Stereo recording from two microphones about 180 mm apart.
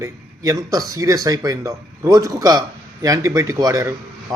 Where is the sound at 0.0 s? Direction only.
20° right (ahead or behind).